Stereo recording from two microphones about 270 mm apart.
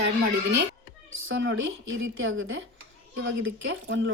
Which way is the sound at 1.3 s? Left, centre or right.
Right.